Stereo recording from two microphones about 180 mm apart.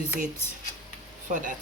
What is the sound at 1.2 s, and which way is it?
Speech, 45° right (ahead or behind).